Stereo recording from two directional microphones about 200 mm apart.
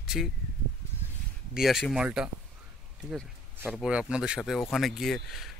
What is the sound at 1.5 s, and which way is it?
Speech, centre (ahead or behind).